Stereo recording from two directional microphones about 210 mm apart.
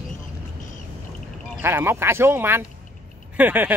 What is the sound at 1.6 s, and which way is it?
Speech, 10° right (ahead or behind).